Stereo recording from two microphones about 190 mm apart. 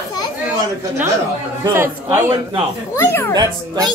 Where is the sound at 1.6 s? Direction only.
15° right (ahead or behind).